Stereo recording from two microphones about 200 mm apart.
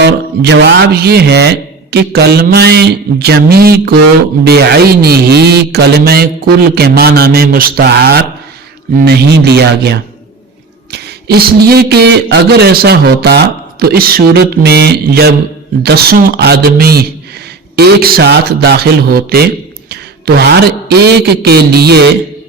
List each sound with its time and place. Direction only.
0.0 s a man's voice: 60° right (ahead or behind)